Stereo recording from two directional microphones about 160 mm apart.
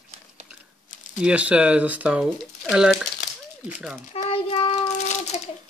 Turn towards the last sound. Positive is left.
turn(degrees=45)  # may be behind; listen again after turning